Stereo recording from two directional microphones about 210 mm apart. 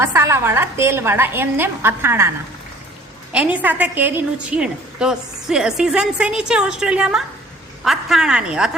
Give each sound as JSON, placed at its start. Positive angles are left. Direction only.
{"t": 0.0, "sound": "a woman's voice", "side_deg": -10}
{"t": 3.3, "sound": "a woman's voice", "side_deg": -5}